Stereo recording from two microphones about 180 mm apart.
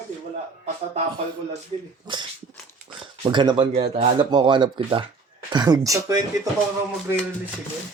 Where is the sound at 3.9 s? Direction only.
35° right (ahead or behind); by 6.2 s 20° right (ahead or behind).